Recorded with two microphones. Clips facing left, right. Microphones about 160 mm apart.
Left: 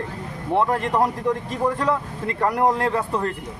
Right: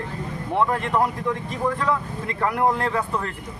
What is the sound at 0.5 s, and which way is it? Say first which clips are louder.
Speech: left 2 dB; 35° left (ahead or behind).